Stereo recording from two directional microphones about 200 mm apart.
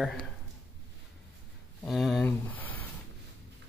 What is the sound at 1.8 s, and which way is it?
Speech, centre (ahead or behind).